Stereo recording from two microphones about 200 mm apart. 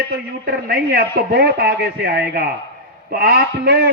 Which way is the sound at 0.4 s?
55° right (ahead or behind).